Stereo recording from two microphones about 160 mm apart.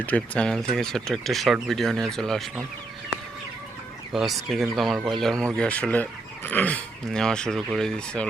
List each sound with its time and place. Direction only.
0.0 s speech: 10° left (ahead or behind)
4.1 s speech: centre (ahead or behind)